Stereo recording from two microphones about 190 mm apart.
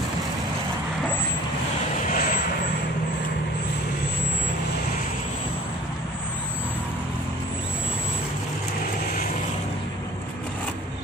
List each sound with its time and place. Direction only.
2.0 s vehicle: 45° left (ahead or behind)